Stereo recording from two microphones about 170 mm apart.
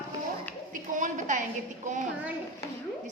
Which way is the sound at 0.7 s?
50° right (ahead or behind).